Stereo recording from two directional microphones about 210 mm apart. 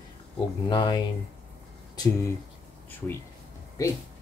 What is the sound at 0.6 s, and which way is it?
Speech, 20° left (ahead or behind).